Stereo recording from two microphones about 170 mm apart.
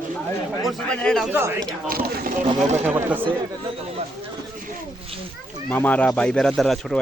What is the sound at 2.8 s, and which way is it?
Speech, 10° right (ahead or behind).